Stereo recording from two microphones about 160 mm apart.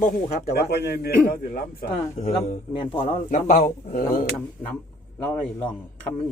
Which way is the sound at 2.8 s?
30° left (ahead or behind).